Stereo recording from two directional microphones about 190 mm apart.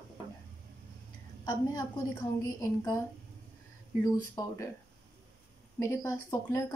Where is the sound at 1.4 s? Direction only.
20° left (ahead or behind).